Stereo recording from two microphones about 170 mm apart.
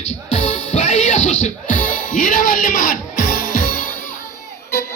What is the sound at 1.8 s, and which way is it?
Music, 55° left (ahead or behind).